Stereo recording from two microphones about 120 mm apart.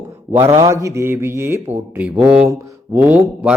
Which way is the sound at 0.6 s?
25° right (ahead or behind).